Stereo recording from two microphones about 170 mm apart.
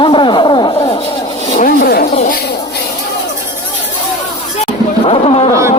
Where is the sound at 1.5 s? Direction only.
60° left (ahead or behind).